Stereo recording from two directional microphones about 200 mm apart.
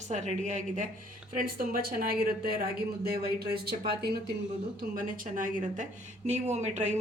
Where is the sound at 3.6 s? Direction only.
50° right (ahead or behind).